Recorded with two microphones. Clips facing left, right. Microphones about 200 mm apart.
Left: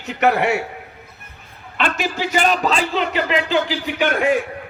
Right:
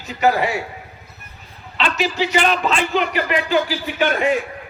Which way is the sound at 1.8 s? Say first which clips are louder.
Right 1 dB; 50° left (ahead or behind).